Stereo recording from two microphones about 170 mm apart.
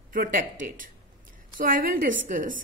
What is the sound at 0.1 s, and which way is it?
A woman's voice, 55° right (ahead or behind).